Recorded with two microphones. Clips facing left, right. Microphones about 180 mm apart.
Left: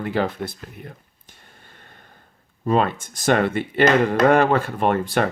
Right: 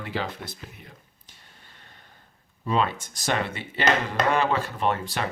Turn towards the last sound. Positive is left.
turn(degrees=55)  # may be behind; listen again after turning